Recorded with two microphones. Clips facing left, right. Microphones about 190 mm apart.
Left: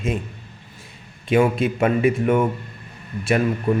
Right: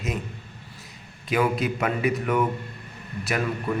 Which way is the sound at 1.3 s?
25° left (ahead or behind).